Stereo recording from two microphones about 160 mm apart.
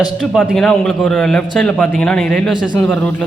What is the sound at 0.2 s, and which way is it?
A man's voice, 5° left (ahead or behind).